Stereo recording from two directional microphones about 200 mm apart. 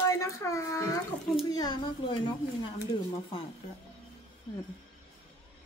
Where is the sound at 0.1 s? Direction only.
15° left (ahead or behind).